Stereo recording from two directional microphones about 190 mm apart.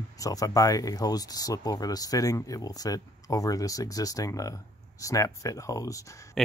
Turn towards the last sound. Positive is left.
turn(degrees=0)  # may be behind; listen again after turning